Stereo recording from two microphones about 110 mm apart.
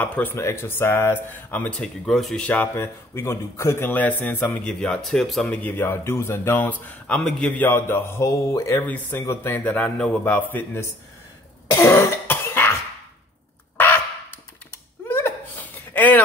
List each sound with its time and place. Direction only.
0.0 s speech: 15° left (ahead or behind)
3.9 s speech: 15° left (ahead or behind)
5.6 s speech: 20° left (ahead or behind)
8.7 s speech: 15° left (ahead or behind)
11.7 s cough: 25° left (ahead or behind)
13.7 s a sound: 20° left (ahead or behind)
15.0 s a sound: 20° left (ahead or behind)